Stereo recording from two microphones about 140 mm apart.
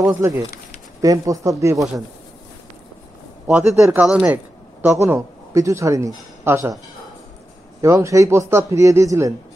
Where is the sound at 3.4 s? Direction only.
10° right (ahead or behind).